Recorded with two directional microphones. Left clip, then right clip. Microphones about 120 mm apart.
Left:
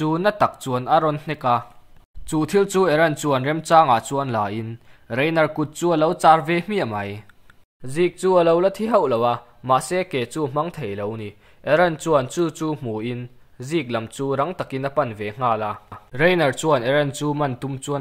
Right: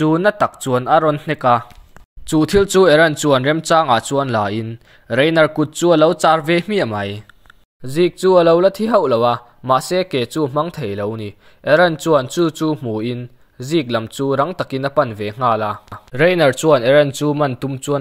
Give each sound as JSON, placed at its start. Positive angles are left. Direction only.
{"t": 0.0, "sound": "speech", "side_deg": -40}